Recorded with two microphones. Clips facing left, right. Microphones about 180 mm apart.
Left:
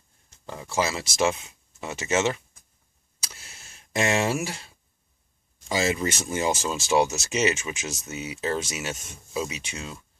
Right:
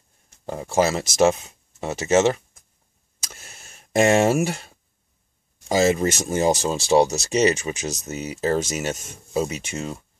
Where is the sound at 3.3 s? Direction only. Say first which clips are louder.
Right 4 dB; 50° right (ahead or behind).